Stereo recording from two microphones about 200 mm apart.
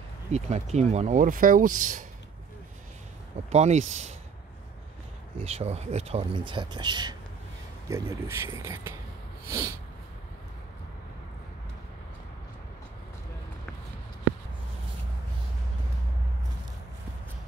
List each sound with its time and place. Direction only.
0.3 s speech: 35° right (ahead or behind)
3.4 s speech: 35° right (ahead or behind)
5.4 s speech: 30° right (ahead or behind); by 8.9 s 15° right (ahead or behind)
9.5 s snort: 15° right (ahead or behind)